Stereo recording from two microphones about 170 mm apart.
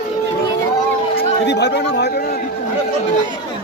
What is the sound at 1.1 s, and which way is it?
Chatter, 90° left.